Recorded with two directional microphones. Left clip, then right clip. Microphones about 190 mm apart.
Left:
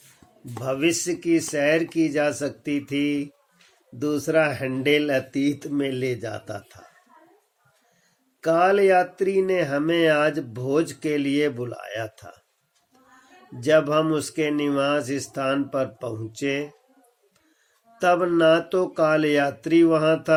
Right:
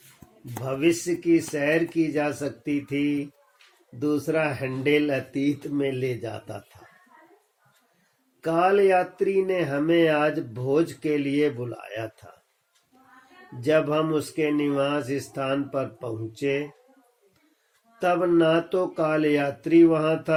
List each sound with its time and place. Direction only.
0.6 s speech: 50° left (ahead or behind)
8.4 s speech: 50° left (ahead or behind)
13.6 s speech: 50° left (ahead or behind)
18.0 s speech: 50° left (ahead or behind)